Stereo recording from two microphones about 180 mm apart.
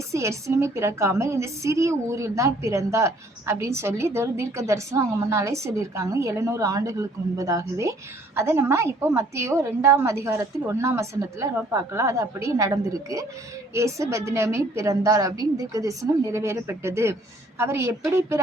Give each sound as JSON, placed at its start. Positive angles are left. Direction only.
{"t": 0.1, "sound": "a woman's voice", "side_deg": -15}